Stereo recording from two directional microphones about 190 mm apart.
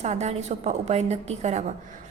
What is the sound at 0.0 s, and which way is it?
A woman's voice, 35° right (ahead or behind).